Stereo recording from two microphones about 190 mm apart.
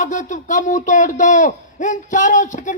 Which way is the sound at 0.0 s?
40° left (ahead or behind).